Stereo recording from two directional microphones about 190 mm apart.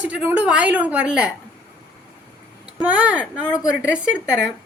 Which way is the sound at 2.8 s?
10° right (ahead or behind).